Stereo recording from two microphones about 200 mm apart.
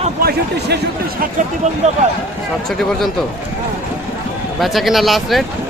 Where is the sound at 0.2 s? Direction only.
50° right (ahead or behind).